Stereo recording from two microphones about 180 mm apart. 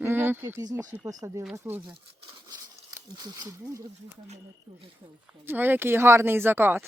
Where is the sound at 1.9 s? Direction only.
30° right (ahead or behind).